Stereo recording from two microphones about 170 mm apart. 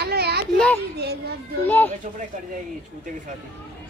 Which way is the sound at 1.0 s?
70° right (ahead or behind).